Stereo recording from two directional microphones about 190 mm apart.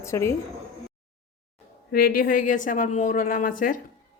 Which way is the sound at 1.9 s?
50° left (ahead or behind).